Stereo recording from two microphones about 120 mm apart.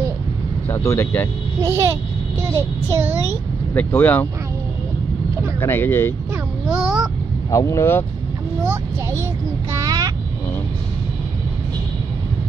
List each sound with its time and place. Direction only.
0.7 s speech: 25° left (ahead or behind)
1.6 s child singing: 20° right (ahead or behind)
3.7 s speech: 15° left (ahead or behind)
5.6 s speech: 15° left (ahead or behind)
6.7 s speech: 5° right (ahead or behind)
7.5 s speech: 25° left (ahead or behind)
9.7 s a sound: 30° right (ahead or behind)